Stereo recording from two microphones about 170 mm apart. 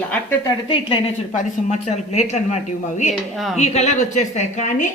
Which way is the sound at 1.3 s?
40° left (ahead or behind).